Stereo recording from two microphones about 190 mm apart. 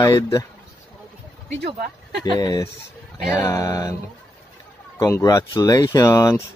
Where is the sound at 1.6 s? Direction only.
55° right (ahead or behind).